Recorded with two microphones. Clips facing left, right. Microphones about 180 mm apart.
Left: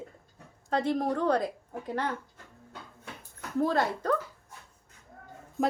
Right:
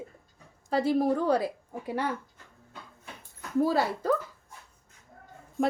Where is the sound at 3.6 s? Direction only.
5° right (ahead or behind).